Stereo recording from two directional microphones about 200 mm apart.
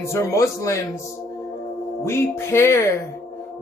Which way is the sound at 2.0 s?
15° left (ahead or behind).